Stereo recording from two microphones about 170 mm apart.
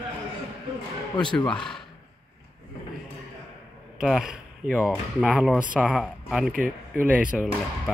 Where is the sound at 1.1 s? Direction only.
25° left (ahead or behind).